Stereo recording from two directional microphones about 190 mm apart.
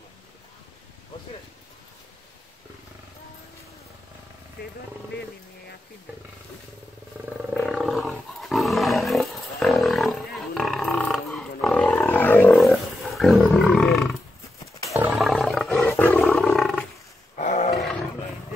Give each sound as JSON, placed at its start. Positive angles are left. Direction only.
{"t": 7.5, "sound": "roar", "side_deg": 0}
{"t": 12.0, "sound": "roaring cats", "side_deg": 10}
{"t": 12.5, "sound": "roaring cats", "side_deg": 0}
{"t": 15.1, "sound": "roar", "side_deg": 0}
{"t": 15.9, "sound": "wild animals", "side_deg": 10}
{"t": 17.4, "sound": "roar", "side_deg": 40}